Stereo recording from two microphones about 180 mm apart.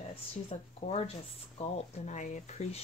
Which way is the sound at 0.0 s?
35° left (ahead or behind).